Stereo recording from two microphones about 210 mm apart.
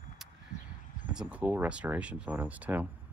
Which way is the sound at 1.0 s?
5° right (ahead or behind).